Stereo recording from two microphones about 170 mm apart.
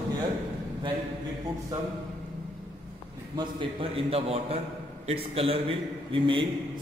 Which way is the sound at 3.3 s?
35° right (ahead or behind).